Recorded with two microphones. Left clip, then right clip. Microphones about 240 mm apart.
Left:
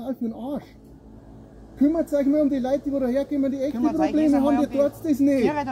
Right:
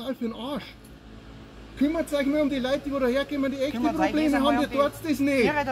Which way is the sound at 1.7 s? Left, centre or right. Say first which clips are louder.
Left 4 dB; centre.